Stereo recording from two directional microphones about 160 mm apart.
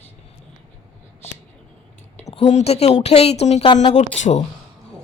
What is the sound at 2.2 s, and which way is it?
A woman's voice, 45° left (ahead or behind).